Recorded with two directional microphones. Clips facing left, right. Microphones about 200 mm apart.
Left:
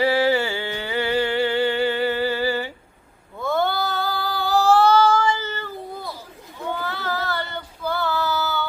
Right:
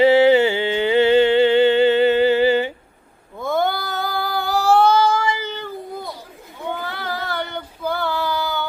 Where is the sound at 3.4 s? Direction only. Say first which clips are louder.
Right 1 dB; 15° right (ahead or behind).